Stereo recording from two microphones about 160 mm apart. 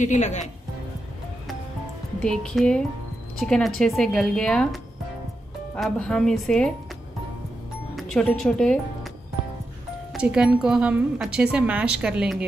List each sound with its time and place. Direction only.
0.0 s speech: 45° left (ahead or behind)
2.2 s speech: 5° left (ahead or behind)
5.8 s speech: 5° left (ahead or behind)
7.9 s speech: 5° left (ahead or behind)
10.1 s a woman's voice: 5° right (ahead or behind)